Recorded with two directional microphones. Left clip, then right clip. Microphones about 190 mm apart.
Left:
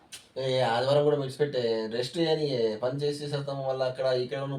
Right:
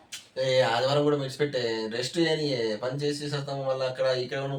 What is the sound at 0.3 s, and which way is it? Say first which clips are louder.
A man's voice: right 3 dB; centre (ahead or behind).